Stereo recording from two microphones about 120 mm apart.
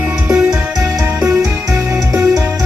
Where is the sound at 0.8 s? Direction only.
25° right (ahead or behind).